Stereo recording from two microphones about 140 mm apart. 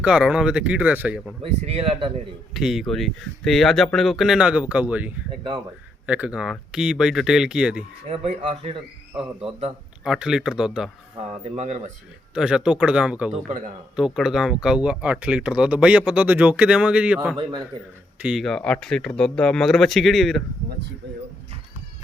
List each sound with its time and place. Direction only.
0.0 s speech: 5° right (ahead or behind)
1.4 s a man's voice: 45° right (ahead or behind)
2.5 s speech: centre (ahead or behind)
8.1 s a man's voice: 50° right (ahead or behind)
10.0 s speech: 5° right (ahead or behind)
11.3 s a man's voice: 50° right (ahead or behind)
12.3 s speech: 5° right (ahead or behind)
18.2 s speech: 5° right (ahead or behind)